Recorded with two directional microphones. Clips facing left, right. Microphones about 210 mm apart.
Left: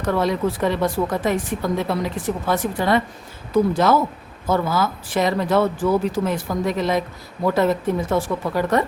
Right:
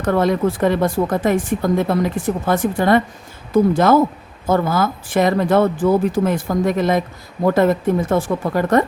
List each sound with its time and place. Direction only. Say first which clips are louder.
0.0 s speech: right 4 dB; 50° right (ahead or behind)